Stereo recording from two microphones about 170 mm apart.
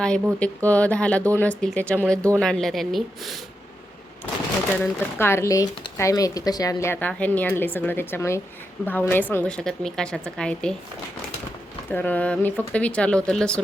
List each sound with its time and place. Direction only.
0.3 s a woman's voice: 10° left (ahead or behind)
4.7 s a woman's voice: 10° left (ahead or behind)
11.9 s speech: 10° left (ahead or behind)